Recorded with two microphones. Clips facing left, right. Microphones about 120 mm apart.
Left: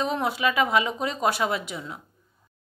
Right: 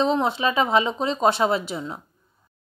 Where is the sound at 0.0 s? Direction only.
25° right (ahead or behind).